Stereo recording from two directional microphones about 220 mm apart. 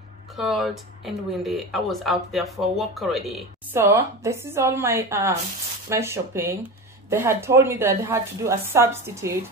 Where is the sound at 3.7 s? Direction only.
10° right (ahead or behind).